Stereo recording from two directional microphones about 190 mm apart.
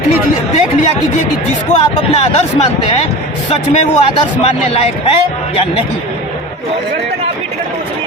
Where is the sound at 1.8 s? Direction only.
30° left (ahead or behind).